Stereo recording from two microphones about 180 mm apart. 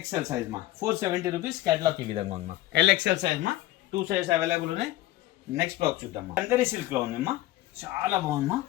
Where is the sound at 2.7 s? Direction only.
75° right (ahead or behind).